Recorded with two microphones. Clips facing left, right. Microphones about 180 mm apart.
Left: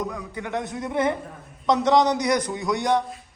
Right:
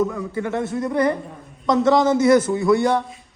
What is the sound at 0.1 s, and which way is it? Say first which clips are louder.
Speech: right 7 dB; centre (ahead or behind).